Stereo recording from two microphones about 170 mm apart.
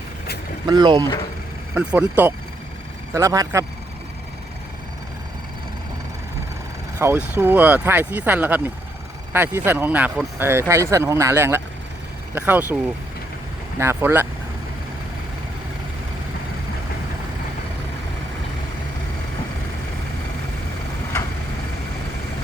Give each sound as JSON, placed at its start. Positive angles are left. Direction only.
{"t": 0.7, "sound": "speech", "side_deg": -25}
{"t": 1.7, "sound": "speech", "side_deg": -10}
{"t": 7.0, "sound": "speech", "side_deg": -15}
{"t": 13.7, "sound": "speech", "side_deg": -15}